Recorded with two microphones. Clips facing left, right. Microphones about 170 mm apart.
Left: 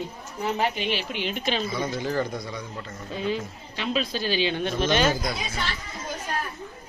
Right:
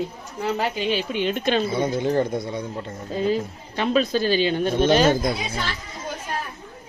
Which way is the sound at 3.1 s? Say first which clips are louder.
Right 6 dB; 40° right (ahead or behind).